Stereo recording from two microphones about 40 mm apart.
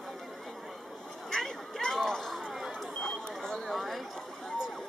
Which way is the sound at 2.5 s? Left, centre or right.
Centre.